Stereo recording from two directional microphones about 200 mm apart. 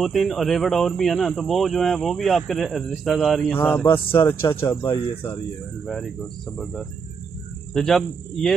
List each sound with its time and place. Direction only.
0.0 s speech: centre (ahead or behind)
3.8 s speech: 25° left (ahead or behind)
4.3 s speech: 10° left (ahead or behind)
6.6 s speech: centre (ahead or behind)